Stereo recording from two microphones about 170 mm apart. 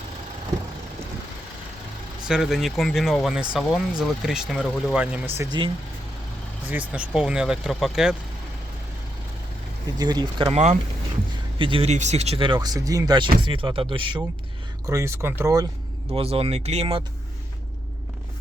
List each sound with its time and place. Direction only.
2.2 s speech: 5° right (ahead or behind)
5.4 s speech: 25° right (ahead or behind)
6.7 s speech: 10° right (ahead or behind)
10.0 s speech: 25° right (ahead or behind)
10.5 s speech: 40° right (ahead or behind)
11.5 s speech: 30° right (ahead or behind)
14.8 s speech: 15° right (ahead or behind)
16.1 s speech: 35° right (ahead or behind)